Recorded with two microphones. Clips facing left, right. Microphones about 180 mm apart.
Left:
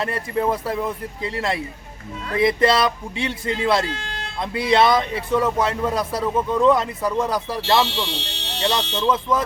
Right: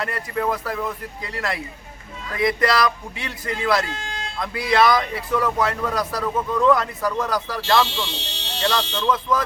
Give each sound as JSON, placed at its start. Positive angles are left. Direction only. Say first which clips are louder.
{"t": 0.0, "sound": "speech", "louder": "left 2 dB", "side_deg": 25}